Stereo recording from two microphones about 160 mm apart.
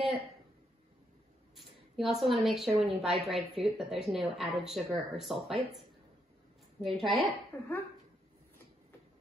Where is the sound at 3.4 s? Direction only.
35° right (ahead or behind).